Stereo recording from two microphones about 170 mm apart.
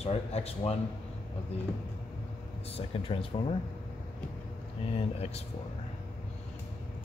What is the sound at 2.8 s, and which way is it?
Speech, 30° left (ahead or behind).